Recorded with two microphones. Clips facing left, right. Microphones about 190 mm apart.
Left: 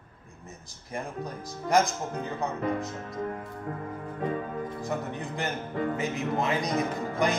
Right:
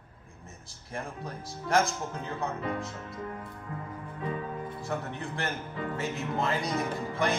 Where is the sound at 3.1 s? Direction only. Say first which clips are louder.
Left 5 dB; 50° left (ahead or behind).